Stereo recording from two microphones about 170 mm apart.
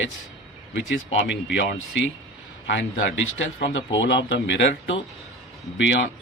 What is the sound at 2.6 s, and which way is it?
A man's voice, 90° left.